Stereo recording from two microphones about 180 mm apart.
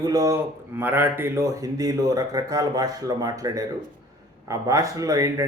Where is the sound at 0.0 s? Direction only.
20° right (ahead or behind).